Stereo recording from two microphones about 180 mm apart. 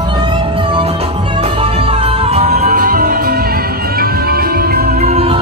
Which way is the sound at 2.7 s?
50° right (ahead or behind).